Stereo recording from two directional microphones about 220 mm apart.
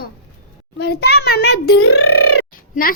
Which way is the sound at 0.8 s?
45° left (ahead or behind).